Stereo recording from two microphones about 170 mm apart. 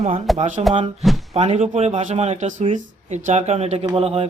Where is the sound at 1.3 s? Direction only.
40° right (ahead or behind).